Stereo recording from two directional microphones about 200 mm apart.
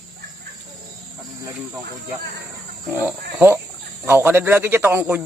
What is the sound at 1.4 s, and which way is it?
Cricket, 15° right (ahead or behind).